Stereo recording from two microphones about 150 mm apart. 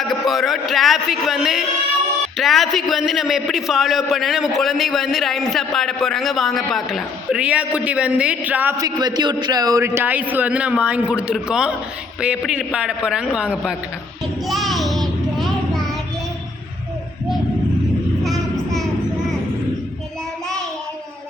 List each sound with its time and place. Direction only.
0.0 s a man's voice: centre (ahead or behind)
8.8 s a man's voice: 25° right (ahead or behind); by 13.7 s 5° right (ahead or behind)
14.4 s child singing: centre (ahead or behind)
18.2 s child singing: centre (ahead or behind)